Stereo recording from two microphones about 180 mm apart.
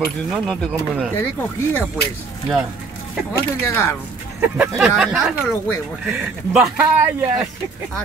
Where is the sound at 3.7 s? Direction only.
15° left (ahead or behind).